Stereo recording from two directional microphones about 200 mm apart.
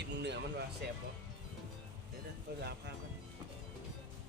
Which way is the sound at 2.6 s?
55° right (ahead or behind).